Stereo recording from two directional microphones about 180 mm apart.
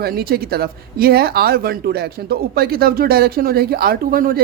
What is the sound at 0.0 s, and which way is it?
Speech, 55° right (ahead or behind).